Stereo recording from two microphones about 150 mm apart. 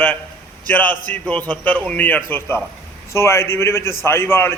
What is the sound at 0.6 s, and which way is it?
A man's voice, 10° left (ahead or behind).